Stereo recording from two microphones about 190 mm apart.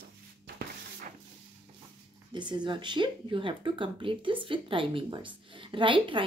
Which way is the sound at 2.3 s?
25° right (ahead or behind).